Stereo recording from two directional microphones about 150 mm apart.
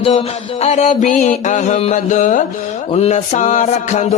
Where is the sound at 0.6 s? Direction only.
50° left (ahead or behind).